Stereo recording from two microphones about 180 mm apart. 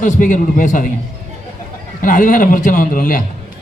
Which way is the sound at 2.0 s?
45° left (ahead or behind).